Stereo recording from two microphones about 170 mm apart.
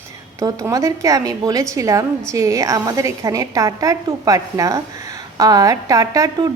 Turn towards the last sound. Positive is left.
turn(degrees=-20)  # may be behind; listen again after turning